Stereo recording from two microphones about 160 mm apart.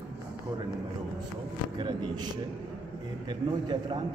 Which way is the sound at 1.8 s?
30° right (ahead or behind).